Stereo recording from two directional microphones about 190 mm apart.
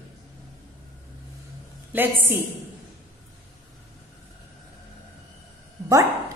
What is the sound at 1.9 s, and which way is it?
Speech, 10° right (ahead or behind).